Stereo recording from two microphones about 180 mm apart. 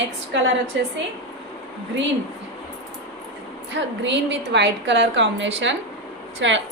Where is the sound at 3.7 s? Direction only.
80° right.